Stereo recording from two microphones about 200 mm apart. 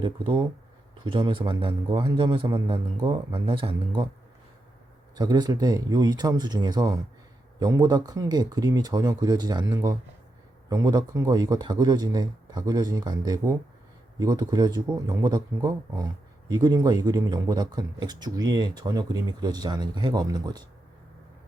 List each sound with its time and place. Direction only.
0.0 s speech: 20° right (ahead or behind)
5.1 s speech: 20° right (ahead or behind)